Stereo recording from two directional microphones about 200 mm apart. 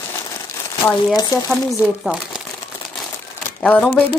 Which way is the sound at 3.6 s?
5° left (ahead or behind).